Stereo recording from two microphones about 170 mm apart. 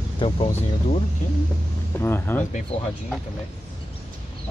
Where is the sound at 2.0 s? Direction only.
15° left (ahead or behind).